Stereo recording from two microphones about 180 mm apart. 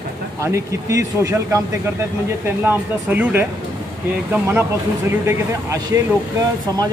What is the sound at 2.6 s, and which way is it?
Speech, 10° right (ahead or behind).